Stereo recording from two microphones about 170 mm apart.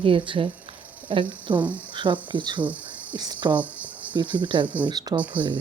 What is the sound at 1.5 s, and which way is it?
Speech, 10° right (ahead or behind).